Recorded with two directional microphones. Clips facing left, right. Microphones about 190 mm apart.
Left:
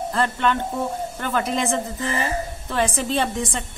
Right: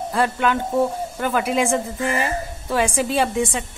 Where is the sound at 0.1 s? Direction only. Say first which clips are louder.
Right 2 dB; 10° right (ahead or behind).